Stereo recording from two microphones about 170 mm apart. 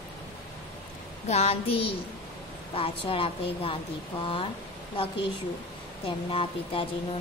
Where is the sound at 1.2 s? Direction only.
35° left (ahead or behind).